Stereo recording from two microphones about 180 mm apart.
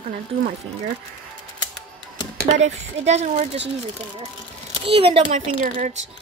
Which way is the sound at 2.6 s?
40° right (ahead or behind).